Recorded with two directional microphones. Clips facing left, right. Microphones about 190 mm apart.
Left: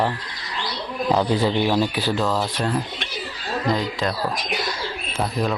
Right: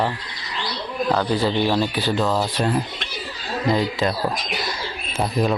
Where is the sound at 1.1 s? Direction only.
15° left (ahead or behind); by 2.4 s centre (ahead or behind).